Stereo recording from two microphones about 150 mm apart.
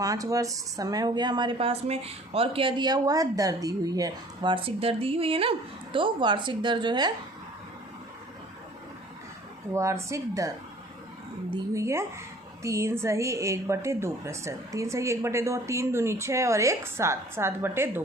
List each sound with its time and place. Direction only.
0.0 s speech: 20° right (ahead or behind)
4.5 s speech: 40° right (ahead or behind)
9.7 s speech: 20° right (ahead or behind)
11.7 s speech: 20° right (ahead or behind)